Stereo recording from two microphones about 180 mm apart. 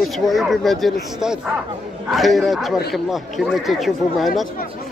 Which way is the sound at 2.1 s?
Centre (ahead or behind).